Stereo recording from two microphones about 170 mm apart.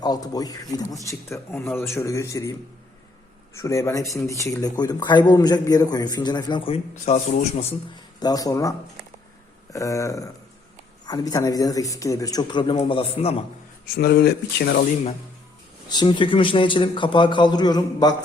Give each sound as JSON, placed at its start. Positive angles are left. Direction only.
{"t": 0.0, "sound": "a man's voice", "side_deg": 20}
{"t": 6.9, "sound": "a man's voice", "side_deg": 45}
{"t": 8.2, "sound": "speech", "side_deg": 20}
{"t": 9.7, "sound": "a man's voice", "side_deg": 20}
{"t": 13.9, "sound": "speech", "side_deg": 70}
{"t": 15.9, "sound": "speech", "side_deg": 25}